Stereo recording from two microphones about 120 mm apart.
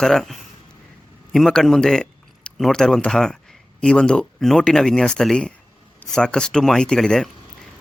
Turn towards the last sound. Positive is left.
turn(degrees=5)  # may be behind; listen again after turning